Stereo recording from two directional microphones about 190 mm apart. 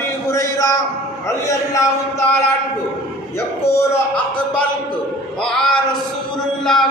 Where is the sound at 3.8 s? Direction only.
5° left (ahead or behind).